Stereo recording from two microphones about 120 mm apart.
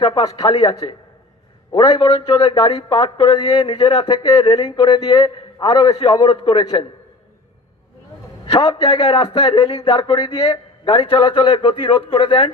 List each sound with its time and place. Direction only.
0.0 s a man's voice: 35° left (ahead or behind)
8.5 s a man's voice: 40° left (ahead or behind)